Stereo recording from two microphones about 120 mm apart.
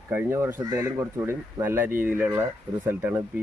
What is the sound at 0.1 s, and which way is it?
Speech, 20° right (ahead or behind).